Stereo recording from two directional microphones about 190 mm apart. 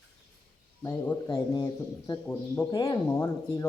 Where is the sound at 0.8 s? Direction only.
10° left (ahead or behind).